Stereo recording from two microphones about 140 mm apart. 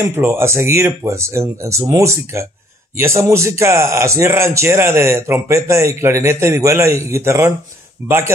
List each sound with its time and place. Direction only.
0.0 s a man's voice: 15° right (ahead or behind)